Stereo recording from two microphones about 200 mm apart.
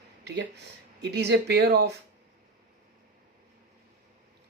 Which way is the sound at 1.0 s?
55° right (ahead or behind).